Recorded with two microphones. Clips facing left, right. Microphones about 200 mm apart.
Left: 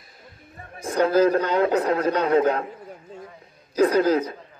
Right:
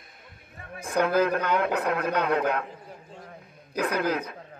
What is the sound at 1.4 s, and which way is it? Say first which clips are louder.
Speech: left 5 dB; 60° right (ahead or behind).